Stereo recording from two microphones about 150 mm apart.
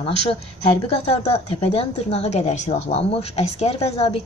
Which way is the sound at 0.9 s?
40° left (ahead or behind).